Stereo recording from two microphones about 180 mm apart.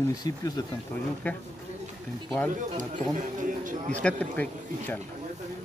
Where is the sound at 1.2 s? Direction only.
10° left (ahead or behind).